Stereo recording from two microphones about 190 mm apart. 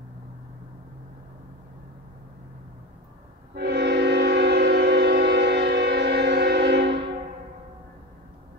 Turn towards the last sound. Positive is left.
turn(degrees=-65)  # may be behind; listen again after turning